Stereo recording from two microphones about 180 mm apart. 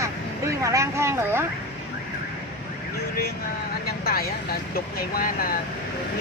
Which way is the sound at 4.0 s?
55° left (ahead or behind).